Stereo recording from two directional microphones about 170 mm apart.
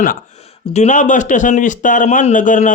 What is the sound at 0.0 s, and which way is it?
Speech, 50° left (ahead or behind).